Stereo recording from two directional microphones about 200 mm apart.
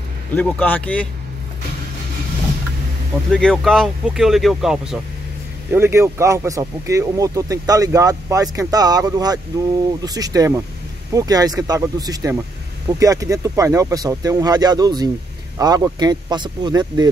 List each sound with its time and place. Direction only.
0.4 s speech: 5° left (ahead or behind)
3.3 s speech: 5° left (ahead or behind); by 17.1 s 20° right (ahead or behind)